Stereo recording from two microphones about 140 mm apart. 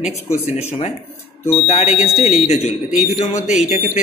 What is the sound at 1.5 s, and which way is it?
Speech, 45° left (ahead or behind).